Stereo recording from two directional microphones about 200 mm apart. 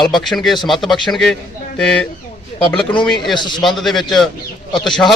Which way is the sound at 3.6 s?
Centre (ahead or behind).